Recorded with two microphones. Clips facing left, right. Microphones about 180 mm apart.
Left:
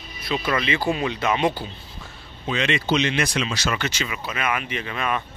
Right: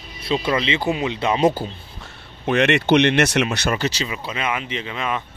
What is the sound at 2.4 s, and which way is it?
Speech, 65° right (ahead or behind).